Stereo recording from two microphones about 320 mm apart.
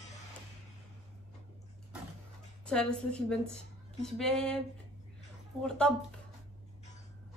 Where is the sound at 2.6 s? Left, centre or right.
Centre.